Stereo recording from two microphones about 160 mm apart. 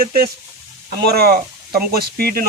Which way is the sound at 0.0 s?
65° right (ahead or behind).